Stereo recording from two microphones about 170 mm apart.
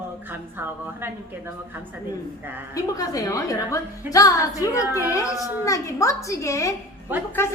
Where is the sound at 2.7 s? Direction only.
20° left (ahead or behind).